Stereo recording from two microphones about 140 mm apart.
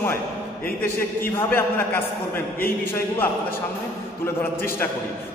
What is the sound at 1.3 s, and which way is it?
A man's voice, 15° left (ahead or behind).